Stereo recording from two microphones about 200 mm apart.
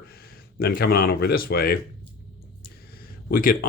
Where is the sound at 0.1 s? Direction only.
50° left (ahead or behind).